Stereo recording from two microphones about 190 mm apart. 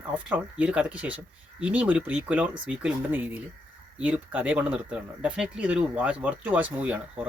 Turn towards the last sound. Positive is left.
turn(degrees=-5)  # may be behind; listen again after turning